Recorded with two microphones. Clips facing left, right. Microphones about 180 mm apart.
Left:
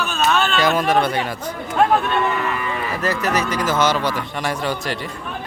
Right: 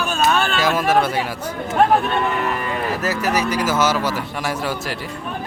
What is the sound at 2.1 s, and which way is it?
Speech, 45° right (ahead or behind).